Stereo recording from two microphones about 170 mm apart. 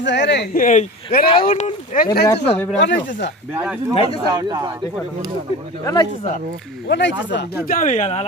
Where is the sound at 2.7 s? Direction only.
90° left.